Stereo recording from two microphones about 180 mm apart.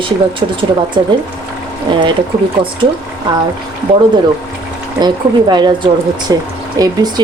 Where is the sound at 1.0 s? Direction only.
25° right (ahead or behind).